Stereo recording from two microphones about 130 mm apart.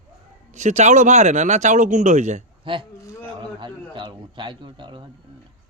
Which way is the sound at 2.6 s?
40° right (ahead or behind).